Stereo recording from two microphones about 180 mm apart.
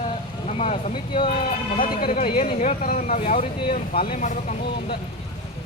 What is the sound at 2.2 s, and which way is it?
Speech, 35° left (ahead or behind).